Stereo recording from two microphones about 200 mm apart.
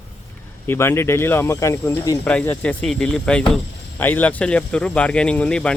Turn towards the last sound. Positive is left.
turn(degrees=5)  # may be behind; listen again after turning